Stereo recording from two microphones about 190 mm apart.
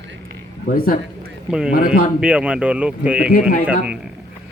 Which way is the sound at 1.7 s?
50° left (ahead or behind).